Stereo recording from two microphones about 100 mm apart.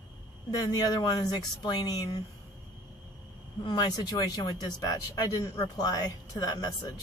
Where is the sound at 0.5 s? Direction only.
40° left (ahead or behind).